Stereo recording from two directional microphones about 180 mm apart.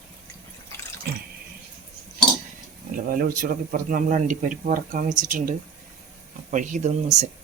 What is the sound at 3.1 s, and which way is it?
Speech, 55° right (ahead or behind).